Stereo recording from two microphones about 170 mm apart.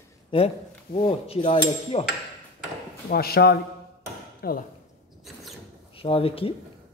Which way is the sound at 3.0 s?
65° left (ahead or behind).